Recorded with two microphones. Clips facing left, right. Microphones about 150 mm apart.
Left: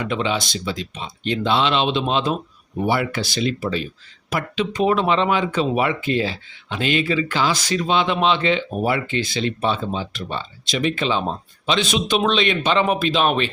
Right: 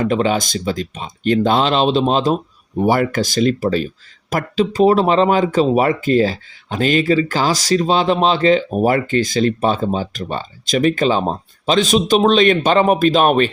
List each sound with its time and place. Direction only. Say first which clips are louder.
0.0 s speech: right 6 dB; 45° right (ahead or behind)